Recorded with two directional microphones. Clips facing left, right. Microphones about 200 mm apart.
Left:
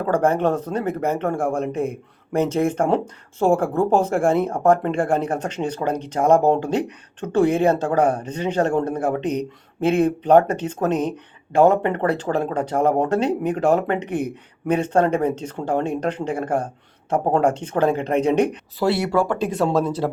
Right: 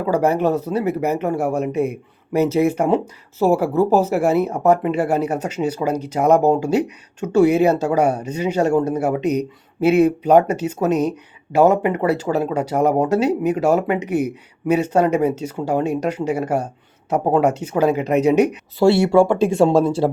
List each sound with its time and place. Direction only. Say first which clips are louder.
0.0 s speech: right 1 dB; 10° right (ahead or behind)
18.8 s speech: right 6 dB; 25° right (ahead or behind)